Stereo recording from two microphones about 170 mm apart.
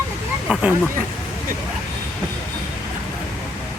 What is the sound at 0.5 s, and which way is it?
Speech, 10° right (ahead or behind).